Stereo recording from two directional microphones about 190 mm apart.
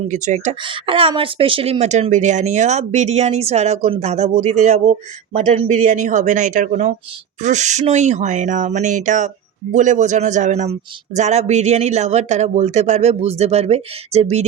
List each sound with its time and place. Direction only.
0.1 s speech: 40° right (ahead or behind)
0.6 s speech: 25° right (ahead or behind)